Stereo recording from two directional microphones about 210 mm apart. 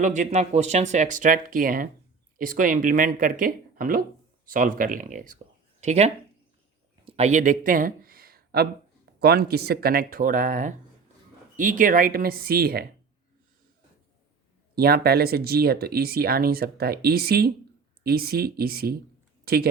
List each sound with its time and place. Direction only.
0.0 s speech: 35° right (ahead or behind)
7.0 s a sound: 30° right (ahead or behind); by 8.6 s 45° right (ahead or behind)
9.2 s speech: 50° right (ahead or behind)
14.8 s speech: 45° right (ahead or behind)